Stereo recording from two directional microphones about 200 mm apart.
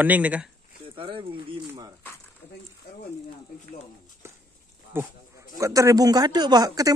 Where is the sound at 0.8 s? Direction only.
25° right (ahead or behind).